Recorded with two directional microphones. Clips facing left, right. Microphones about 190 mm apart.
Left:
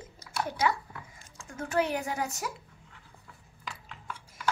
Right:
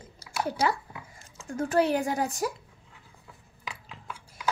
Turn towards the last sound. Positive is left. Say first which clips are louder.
# right 1 dB
turn(degrees=-5)  # may be behind; listen again after turning